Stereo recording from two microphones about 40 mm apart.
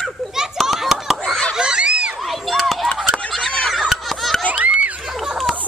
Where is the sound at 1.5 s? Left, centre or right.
Right.